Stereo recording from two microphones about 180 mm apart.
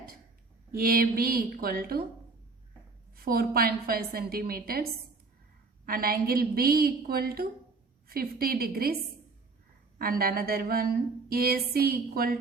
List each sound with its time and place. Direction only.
0.7 s a woman's voice: 55° right (ahead or behind)
3.2 s a woman's voice: 55° right (ahead or behind)
10.0 s a woman's voice: 55° right (ahead or behind)